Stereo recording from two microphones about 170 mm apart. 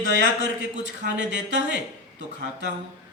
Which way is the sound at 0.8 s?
90° right.